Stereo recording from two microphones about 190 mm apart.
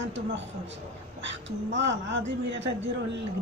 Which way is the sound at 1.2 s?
75° right (ahead or behind).